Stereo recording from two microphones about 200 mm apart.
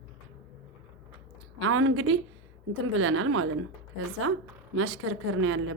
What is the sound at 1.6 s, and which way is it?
Speech, 90° right.